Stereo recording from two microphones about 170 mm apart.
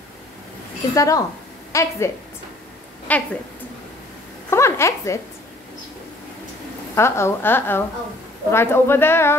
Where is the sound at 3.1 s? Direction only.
10° left (ahead or behind).